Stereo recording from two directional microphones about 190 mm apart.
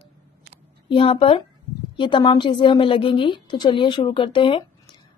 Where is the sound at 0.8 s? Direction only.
25° left (ahead or behind).